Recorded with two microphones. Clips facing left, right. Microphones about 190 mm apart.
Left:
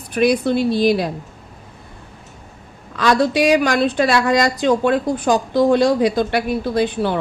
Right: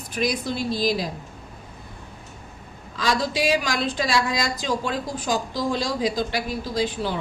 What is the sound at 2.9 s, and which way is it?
A woman's voice, 65° left (ahead or behind).